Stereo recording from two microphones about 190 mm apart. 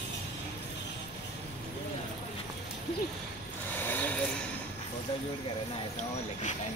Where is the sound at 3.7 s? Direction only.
10° left (ahead or behind).